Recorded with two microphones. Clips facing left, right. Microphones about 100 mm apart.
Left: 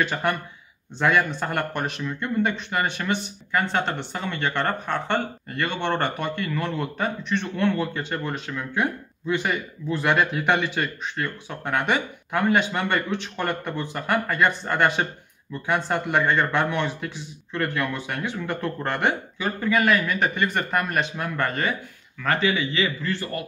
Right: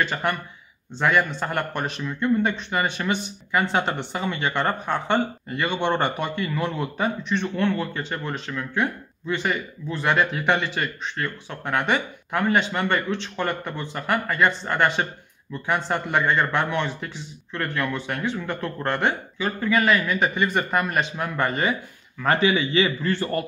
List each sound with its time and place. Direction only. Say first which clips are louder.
0.0 s speech: even; 5° left (ahead or behind); by 23.4 s 30° right (ahead or behind)